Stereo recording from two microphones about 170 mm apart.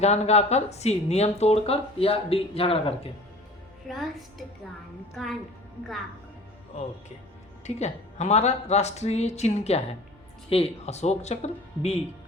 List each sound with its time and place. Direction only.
0.0 s speech: 40° left (ahead or behind)
3.8 s a woman's voice: centre (ahead or behind)
7.6 s speech: 40° left (ahead or behind)